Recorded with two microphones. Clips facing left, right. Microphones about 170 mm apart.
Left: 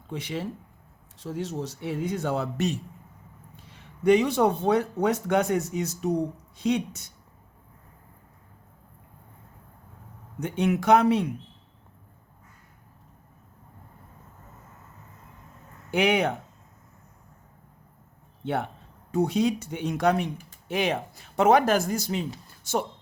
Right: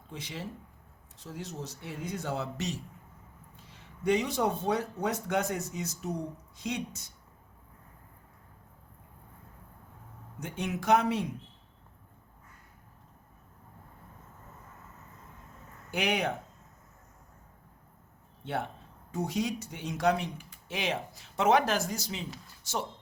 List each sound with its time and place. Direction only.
0.1 s speech: 65° left (ahead or behind)
4.0 s speech: 65° left (ahead or behind)
10.4 s speech: 65° left (ahead or behind)
15.9 s speech: 65° left (ahead or behind)
19.1 s speech: 65° left (ahead or behind)